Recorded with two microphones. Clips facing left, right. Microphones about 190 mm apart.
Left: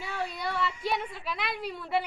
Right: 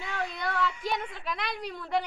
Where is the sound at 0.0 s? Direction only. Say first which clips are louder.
Even; 5° left (ahead or behind).